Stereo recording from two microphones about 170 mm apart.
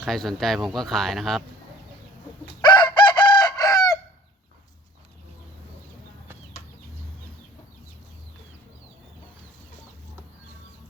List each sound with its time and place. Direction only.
0.0 s speech: centre (ahead or behind)
2.6 s chicken: 25° left (ahead or behind)